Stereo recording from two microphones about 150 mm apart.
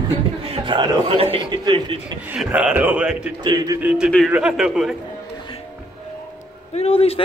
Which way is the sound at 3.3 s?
25° right (ahead or behind).